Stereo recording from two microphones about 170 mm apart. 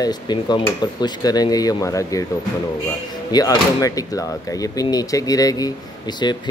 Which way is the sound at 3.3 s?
20° left (ahead or behind).